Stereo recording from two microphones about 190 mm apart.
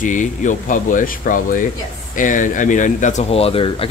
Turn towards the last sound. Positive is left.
turn(degrees=30)  # may be behind; listen again after turning